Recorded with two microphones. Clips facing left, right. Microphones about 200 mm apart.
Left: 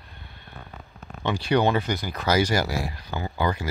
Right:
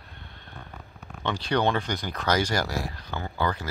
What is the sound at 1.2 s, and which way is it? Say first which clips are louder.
Speech: left 3 dB; 10° left (ahead or behind).